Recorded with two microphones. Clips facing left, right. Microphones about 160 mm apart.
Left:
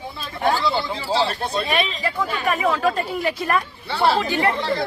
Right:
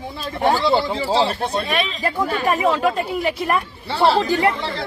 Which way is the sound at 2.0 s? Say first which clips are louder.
Right 3 dB; 50° right (ahead or behind).